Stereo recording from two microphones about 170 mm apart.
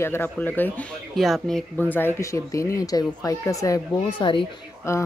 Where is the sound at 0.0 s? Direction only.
15° left (ahead or behind).